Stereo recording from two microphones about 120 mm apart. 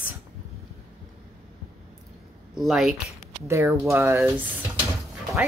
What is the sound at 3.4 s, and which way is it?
Speech, 20° right (ahead or behind).